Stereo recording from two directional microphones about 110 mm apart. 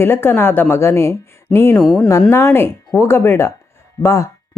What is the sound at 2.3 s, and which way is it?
Speech, 25° left (ahead or behind).